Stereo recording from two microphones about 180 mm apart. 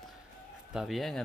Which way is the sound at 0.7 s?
Centre (ahead or behind).